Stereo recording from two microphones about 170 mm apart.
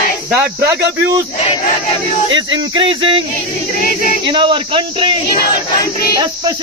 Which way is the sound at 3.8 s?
55° left (ahead or behind).